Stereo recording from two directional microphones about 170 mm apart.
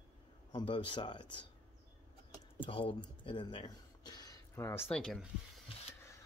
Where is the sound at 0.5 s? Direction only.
30° left (ahead or behind).